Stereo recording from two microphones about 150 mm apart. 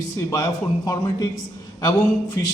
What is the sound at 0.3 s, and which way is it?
Mantra, 20° left (ahead or behind).